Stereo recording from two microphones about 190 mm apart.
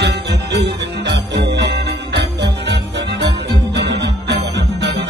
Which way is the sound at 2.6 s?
65° right (ahead or behind).